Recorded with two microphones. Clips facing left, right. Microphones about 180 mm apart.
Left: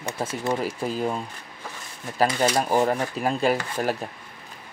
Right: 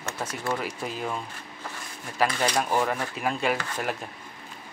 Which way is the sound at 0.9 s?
35° left (ahead or behind).